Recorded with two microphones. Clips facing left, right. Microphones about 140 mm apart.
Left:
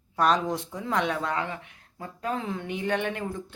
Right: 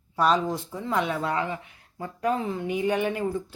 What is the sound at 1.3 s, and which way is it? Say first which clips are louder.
Speech: right 2 dB; 35° right (ahead or behind).